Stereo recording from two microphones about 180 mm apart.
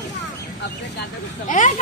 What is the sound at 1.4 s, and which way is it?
Speech, 45° left (ahead or behind).